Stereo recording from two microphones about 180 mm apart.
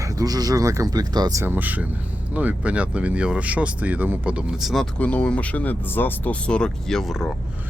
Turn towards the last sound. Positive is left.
turn(degrees=0)  # may be behind; listen again after turning